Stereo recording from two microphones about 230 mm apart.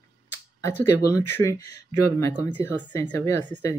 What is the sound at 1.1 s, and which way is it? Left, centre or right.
Speech, centre.